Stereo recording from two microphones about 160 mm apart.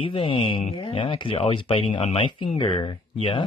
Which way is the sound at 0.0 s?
35° left (ahead or behind).